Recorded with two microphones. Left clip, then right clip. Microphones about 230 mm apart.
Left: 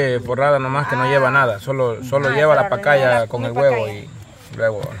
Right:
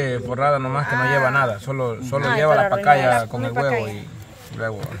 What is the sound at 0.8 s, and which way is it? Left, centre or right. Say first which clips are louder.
Speech: left 2 dB; centre.